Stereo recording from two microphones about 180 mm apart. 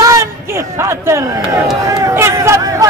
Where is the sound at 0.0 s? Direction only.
15° right (ahead or behind).